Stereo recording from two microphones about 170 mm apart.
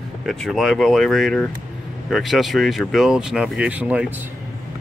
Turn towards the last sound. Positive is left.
turn(degrees=-5)  # may be behind; listen again after turning